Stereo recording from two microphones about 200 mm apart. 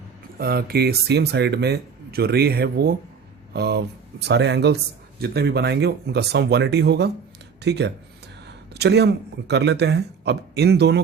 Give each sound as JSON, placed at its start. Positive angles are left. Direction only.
{"t": 0.3, "sound": "speech", "side_deg": -50}